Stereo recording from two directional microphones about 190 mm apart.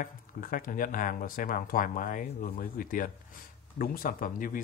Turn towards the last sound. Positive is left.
turn(degrees=45)  # may be behind; listen again after turning